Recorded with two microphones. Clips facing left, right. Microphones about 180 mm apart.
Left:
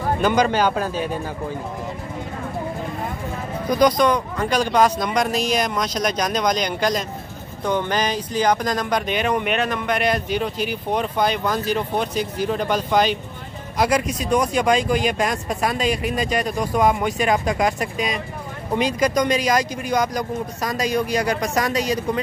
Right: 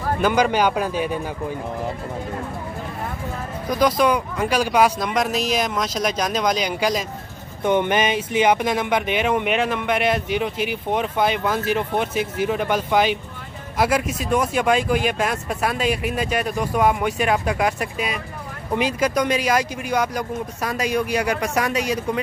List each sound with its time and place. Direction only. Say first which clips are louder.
0.2 s speech: even; 10° right (ahead or behind)
3.8 s speech: left 1 dB; 5° right (ahead or behind)
7.6 s speech: right 3 dB; 20° right (ahead or behind)
8.5 s speech: even; 5° right (ahead or behind)